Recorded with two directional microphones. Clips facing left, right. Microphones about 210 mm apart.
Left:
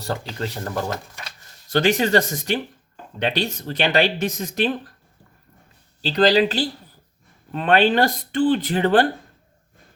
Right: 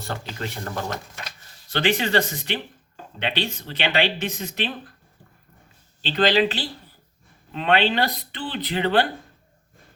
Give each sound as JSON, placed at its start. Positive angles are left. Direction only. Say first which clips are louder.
{"t": 0.0, "sound": "speech", "louder": "left 4 dB", "side_deg": 35}
{"t": 6.0, "sound": "speech", "louder": "left 3 dB", "side_deg": 40}